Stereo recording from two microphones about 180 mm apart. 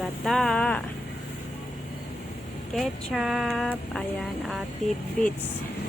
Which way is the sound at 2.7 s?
Centre (ahead or behind).